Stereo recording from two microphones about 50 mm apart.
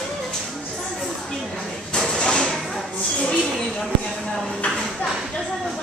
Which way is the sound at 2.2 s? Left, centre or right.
Centre.